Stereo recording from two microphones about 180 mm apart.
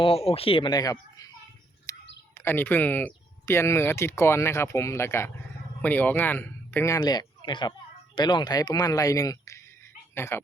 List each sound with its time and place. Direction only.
0.0 s speech: 35° left (ahead or behind)
1.9 s bird: 20° left (ahead or behind)
2.4 s speech: 10° left (ahead or behind)